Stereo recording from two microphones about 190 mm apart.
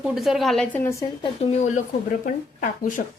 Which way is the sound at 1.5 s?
40° left (ahead or behind).